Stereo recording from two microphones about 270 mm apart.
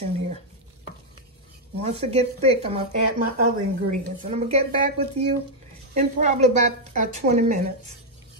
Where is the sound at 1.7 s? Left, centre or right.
Right.